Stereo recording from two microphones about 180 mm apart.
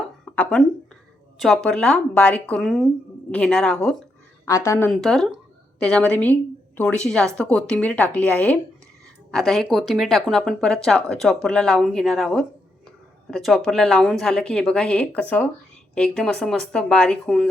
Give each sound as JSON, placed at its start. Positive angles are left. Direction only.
{"t": 0.3, "sound": "a sound", "side_deg": 5}
{"t": 1.4, "sound": "a woman's voice", "side_deg": 0}
{"t": 4.4, "sound": "a woman's voice", "side_deg": 15}
{"t": 4.9, "sound": "a woman's voice", "side_deg": 0}